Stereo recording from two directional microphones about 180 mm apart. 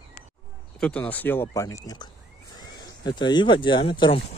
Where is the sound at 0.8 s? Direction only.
5° left (ahead or behind).